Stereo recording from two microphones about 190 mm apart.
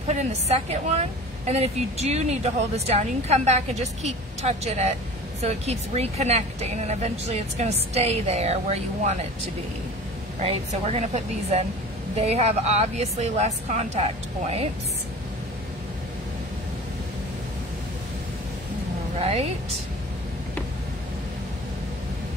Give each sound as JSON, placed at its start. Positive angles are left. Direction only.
{"t": 0.1, "sound": "speech", "side_deg": -35}
{"t": 10.4, "sound": "speech", "side_deg": -35}
{"t": 19.1, "sound": "speech", "side_deg": -35}